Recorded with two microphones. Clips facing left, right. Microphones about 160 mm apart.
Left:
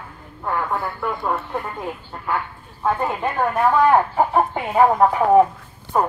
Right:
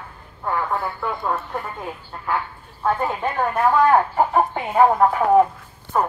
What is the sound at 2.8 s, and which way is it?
Speech, centre (ahead or behind).